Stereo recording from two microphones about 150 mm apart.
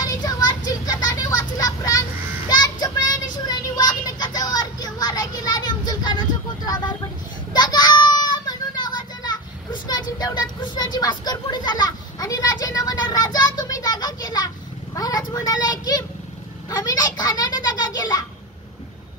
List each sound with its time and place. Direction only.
0.0 s vehicle: 25° left (ahead or behind)
2.5 s child singing: 30° left (ahead or behind)
7.5 s children playing: 30° left (ahead or behind)
15.0 s a sound: 25° left (ahead or behind)